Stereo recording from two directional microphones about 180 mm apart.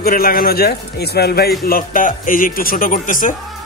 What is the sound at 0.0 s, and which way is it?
Speech, 55° left (ahead or behind).